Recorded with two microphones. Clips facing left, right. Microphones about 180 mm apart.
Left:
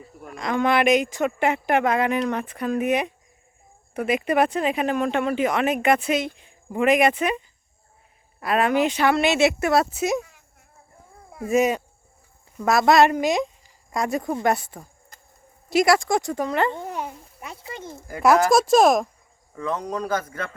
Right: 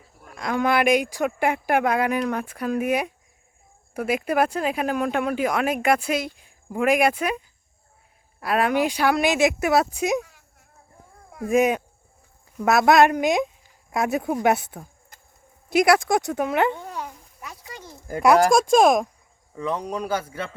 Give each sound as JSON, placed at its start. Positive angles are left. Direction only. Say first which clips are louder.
{"t": 0.3, "sound": "a woman's voice", "louder": "left 1 dB", "side_deg": -5}
{"t": 16.7, "sound": "a sound", "louder": "left 3 dB", "side_deg": 20}
{"t": 18.5, "sound": "speech", "louder": "even", "side_deg": 5}
{"t": 19.5, "sound": "speech", "louder": "even", "side_deg": -15}